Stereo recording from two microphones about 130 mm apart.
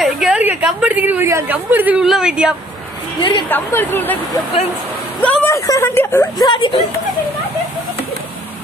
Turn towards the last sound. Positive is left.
turn(degrees=40)  # may be behind; listen again after turning